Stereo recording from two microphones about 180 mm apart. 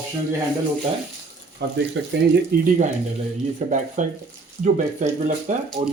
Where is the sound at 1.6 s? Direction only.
70° right (ahead or behind).